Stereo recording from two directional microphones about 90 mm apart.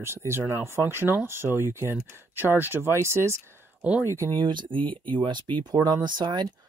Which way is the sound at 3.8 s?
15° right (ahead or behind).